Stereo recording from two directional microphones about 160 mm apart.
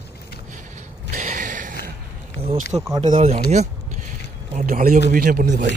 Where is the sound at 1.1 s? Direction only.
55° right (ahead or behind).